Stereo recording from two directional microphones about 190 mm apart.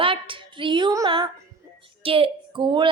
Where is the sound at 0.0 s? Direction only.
25° right (ahead or behind).